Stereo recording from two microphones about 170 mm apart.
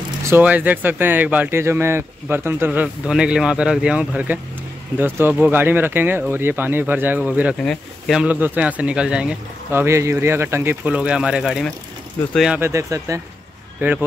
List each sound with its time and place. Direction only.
0.3 s speech: 10° right (ahead or behind)
12.6 s speech: 20° right (ahead or behind)